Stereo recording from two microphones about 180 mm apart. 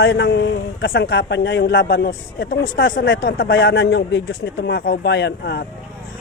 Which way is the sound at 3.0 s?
90° left.